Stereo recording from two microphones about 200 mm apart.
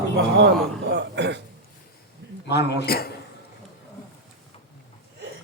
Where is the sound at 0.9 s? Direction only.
60° right (ahead or behind).